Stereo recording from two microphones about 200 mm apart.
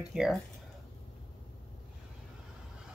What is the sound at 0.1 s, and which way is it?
Speech, centre (ahead or behind).